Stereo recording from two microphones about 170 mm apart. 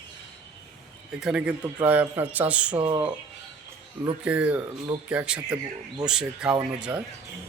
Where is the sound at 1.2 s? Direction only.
5° right (ahead or behind).